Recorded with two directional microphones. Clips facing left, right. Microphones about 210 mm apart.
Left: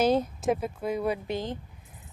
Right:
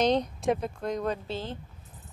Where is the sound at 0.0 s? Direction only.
5° left (ahead or behind).